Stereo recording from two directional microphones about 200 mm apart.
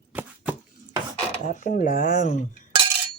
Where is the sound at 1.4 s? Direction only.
40° left (ahead or behind).